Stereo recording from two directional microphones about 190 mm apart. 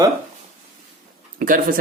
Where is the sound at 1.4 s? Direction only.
45° right (ahead or behind).